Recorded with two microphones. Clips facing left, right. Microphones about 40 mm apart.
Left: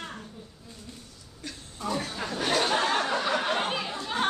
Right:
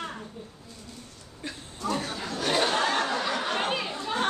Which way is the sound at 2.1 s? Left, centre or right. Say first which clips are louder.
Left 1 dB; centre.